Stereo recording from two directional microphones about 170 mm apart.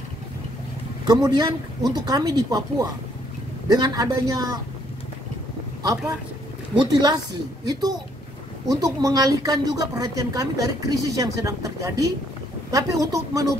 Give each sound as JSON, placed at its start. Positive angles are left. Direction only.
{"t": 1.0, "sound": "a woman's voice", "side_deg": -25}
{"t": 6.8, "sound": "a woman's voice", "side_deg": -25}
{"t": 8.6, "sound": "a woman's voice", "side_deg": -20}